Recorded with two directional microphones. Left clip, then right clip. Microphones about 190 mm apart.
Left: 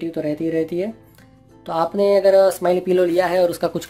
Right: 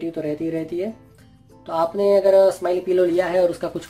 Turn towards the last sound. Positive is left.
turn(degrees=50)  # may be behind; listen again after turning